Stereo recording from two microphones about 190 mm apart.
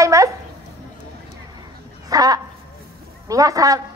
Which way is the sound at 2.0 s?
20° right (ahead or behind).